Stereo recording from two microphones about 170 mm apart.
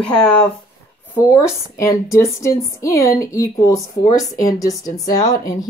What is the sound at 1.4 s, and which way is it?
A woman's voice, 15° left (ahead or behind).